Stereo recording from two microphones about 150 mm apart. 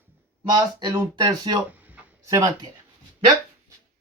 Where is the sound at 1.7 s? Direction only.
10° right (ahead or behind).